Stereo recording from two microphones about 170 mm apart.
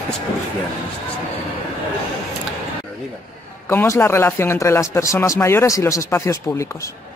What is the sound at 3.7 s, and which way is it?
Speech, 15° left (ahead or behind).